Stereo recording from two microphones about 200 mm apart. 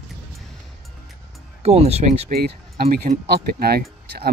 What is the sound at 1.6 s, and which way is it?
Speech, 30° right (ahead or behind).